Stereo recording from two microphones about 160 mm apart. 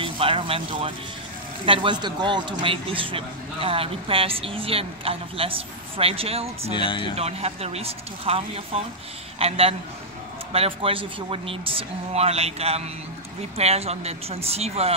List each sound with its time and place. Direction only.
0.0 s a man's voice: 35° right (ahead or behind)
6.7 s speech: 30° left (ahead or behind)
7.2 s a man's voice: 40° right (ahead or behind)